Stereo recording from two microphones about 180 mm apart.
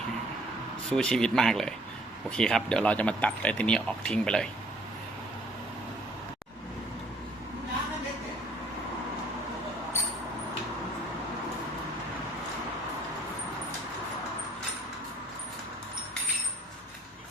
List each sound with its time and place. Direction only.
0.9 s speech: 5° left (ahead or behind)